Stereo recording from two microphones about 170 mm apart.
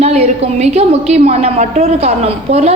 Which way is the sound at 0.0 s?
40° right (ahead or behind).